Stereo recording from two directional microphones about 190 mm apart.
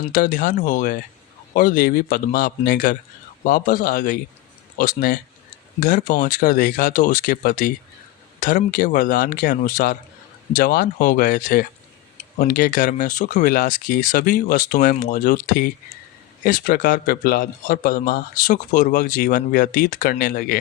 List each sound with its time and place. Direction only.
0.0 s a man's voice: 45° left (ahead or behind)